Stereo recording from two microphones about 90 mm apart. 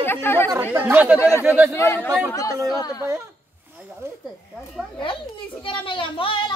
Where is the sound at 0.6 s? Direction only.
20° right (ahead or behind).